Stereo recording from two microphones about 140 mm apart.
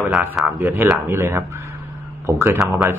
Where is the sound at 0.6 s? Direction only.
15° right (ahead or behind).